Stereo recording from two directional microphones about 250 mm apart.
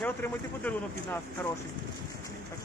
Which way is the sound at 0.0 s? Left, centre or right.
Centre.